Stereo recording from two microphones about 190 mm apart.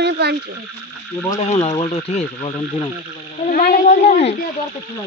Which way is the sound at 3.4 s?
50° left (ahead or behind).